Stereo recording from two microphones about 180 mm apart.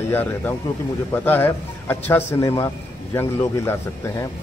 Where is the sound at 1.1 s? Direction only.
10° left (ahead or behind).